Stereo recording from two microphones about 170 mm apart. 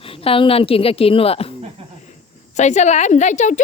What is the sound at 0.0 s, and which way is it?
A woman's voice, 35° left (ahead or behind).